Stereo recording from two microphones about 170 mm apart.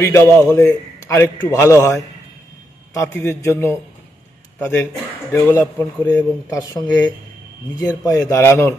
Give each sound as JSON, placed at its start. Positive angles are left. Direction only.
{"t": 0.0, "sound": "a man's voice", "side_deg": 15}